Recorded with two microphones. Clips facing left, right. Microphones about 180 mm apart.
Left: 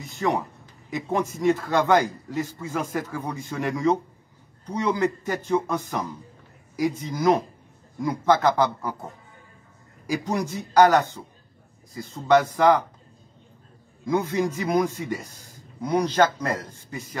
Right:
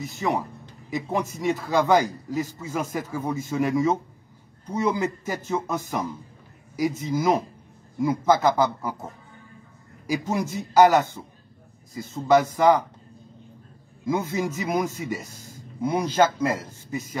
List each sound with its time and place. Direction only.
0.0 s a man's voice: centre (ahead or behind)
6.8 s a man's voice: 5° right (ahead or behind)
14.0 s a man's voice: 5° right (ahead or behind)